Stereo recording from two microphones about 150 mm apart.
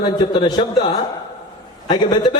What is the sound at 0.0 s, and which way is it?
Speech, 30° left (ahead or behind).